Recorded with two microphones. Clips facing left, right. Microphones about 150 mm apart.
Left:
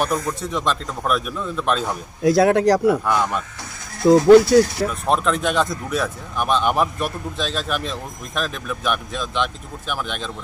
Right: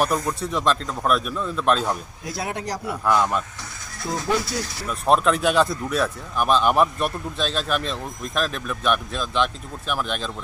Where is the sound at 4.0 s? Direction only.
75° left (ahead or behind).